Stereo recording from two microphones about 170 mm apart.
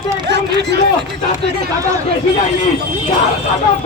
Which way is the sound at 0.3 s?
90° right.